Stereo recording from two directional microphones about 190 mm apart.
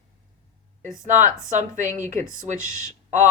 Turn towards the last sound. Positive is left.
turn(degrees=-40)  # may be behind; listen again after turning